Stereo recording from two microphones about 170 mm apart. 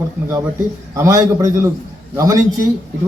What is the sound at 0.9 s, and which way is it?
A man's voice, 20° right (ahead or behind).